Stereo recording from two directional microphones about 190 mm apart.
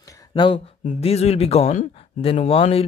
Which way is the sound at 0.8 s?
35° left (ahead or behind).